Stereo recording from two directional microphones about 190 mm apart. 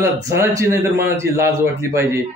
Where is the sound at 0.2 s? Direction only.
15° right (ahead or behind).